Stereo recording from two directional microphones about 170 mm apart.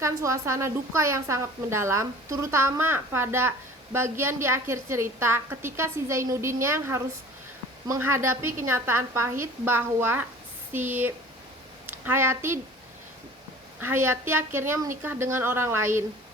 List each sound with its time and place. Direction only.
0.0 s a woman's voice: 15° right (ahead or behind)
13.7 s a woman's voice: 15° right (ahead or behind)